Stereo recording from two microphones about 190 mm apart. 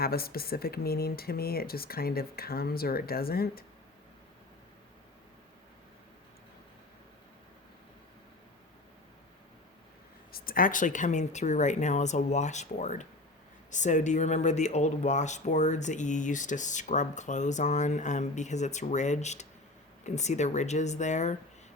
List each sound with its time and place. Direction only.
0.0 s speech: 55° left (ahead or behind)
10.3 s speech: 50° left (ahead or behind)